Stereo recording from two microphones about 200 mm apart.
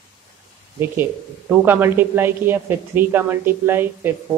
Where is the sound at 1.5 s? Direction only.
10° right (ahead or behind).